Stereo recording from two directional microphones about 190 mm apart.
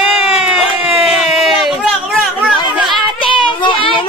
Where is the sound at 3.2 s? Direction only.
25° left (ahead or behind).